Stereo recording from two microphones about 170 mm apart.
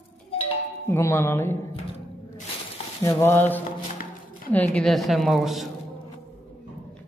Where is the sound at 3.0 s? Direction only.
15° left (ahead or behind); by 5.7 s centre (ahead or behind).